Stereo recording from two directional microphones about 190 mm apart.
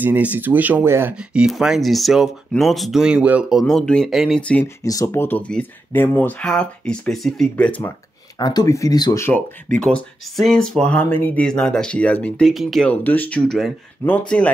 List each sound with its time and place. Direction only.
0.0 s speech: 10° right (ahead or behind)
4.8 s speech: 15° left (ahead or behind)
8.4 s speech: 20° left (ahead or behind)
9.8 s speech: 5° left (ahead or behind)